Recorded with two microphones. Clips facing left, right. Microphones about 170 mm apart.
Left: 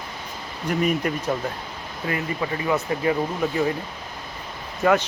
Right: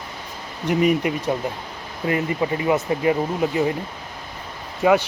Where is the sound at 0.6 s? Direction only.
15° right (ahead or behind).